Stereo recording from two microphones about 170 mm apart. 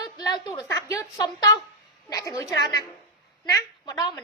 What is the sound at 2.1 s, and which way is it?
Speech, 20° left (ahead or behind).